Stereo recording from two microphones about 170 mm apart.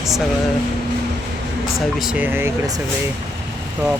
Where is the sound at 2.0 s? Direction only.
5° right (ahead or behind).